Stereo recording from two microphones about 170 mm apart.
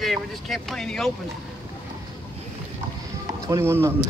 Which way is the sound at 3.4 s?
15° right (ahead or behind).